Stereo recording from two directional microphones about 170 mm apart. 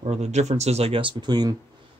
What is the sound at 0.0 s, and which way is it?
Speech, 40° right (ahead or behind).